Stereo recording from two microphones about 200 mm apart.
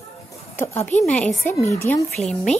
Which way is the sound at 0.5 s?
10° left (ahead or behind).